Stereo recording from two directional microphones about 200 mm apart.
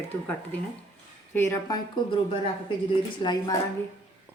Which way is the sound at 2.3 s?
25° left (ahead or behind).